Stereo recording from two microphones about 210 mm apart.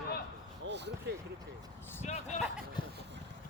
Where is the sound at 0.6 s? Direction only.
55° right (ahead or behind).